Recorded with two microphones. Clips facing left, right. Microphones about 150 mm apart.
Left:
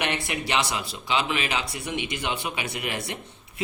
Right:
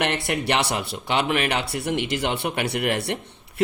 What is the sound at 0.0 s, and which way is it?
A man's voice, 65° right (ahead or behind).